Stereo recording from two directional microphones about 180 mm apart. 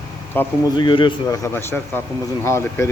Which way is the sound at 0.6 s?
25° left (ahead or behind).